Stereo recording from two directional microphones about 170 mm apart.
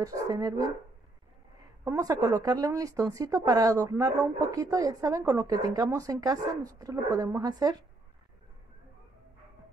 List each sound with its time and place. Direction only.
0.0 s a woman's voice: 20° right (ahead or behind)
1.9 s a woman's voice: 20° right (ahead or behind)